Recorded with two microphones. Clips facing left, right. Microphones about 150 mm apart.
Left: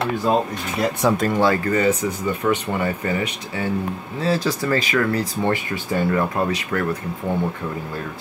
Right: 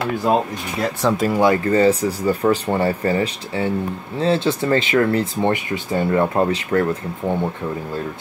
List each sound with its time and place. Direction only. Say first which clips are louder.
1.1 s speech: right 2 dB; 5° right (ahead or behind)
1.5 s speech: right 4 dB; 30° right (ahead or behind)